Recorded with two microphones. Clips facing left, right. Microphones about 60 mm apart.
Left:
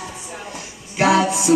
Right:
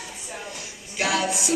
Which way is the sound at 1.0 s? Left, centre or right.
Left.